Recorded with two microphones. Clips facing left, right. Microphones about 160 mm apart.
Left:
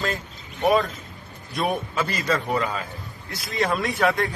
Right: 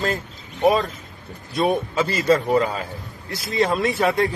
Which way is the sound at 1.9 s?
35° right (ahead or behind).